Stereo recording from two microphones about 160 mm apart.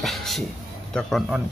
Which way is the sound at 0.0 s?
Centre (ahead or behind).